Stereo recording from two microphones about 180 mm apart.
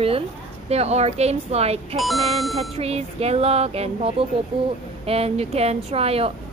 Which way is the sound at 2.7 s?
35° right (ahead or behind).